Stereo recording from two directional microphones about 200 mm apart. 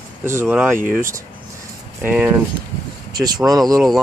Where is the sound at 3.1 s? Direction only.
20° right (ahead or behind).